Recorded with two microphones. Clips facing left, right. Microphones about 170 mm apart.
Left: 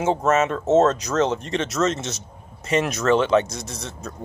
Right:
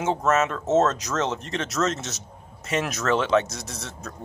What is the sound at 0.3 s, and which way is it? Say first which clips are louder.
Speech: left 3 dB; centre (ahead or behind).